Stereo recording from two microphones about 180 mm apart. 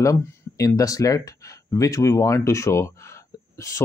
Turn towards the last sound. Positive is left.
turn(degrees=15)  # may be behind; listen again after turning